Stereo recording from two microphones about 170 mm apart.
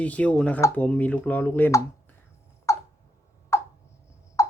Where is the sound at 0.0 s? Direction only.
10° left (ahead or behind).